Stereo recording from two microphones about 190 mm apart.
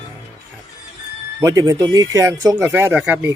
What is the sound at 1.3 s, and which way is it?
Speech, 20° right (ahead or behind).